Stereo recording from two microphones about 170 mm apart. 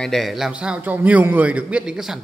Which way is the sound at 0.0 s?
Centre (ahead or behind).